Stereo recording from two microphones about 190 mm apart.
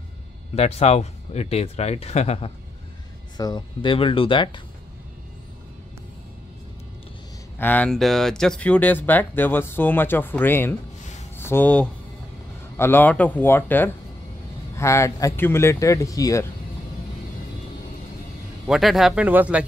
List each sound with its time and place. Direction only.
0.6 s speech: 35° left (ahead or behind)
3.3 s speech: 20° left (ahead or behind)
7.5 s speech: 10° left (ahead or behind)
18.7 s speech: centre (ahead or behind)